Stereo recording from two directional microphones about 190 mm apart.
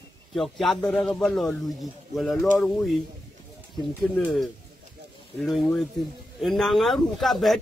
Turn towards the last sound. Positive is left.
turn(degrees=0)  # may be behind; listen again after turning